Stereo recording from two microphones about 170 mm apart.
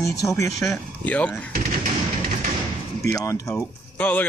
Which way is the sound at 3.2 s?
20° left (ahead or behind).